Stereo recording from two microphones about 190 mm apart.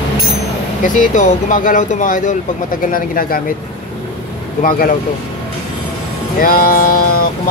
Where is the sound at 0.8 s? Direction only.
45° left (ahead or behind).